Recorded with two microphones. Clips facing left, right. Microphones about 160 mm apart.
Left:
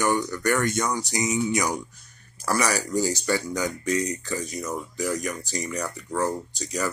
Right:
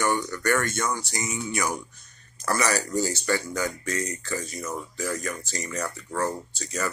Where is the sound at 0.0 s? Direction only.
15° left (ahead or behind).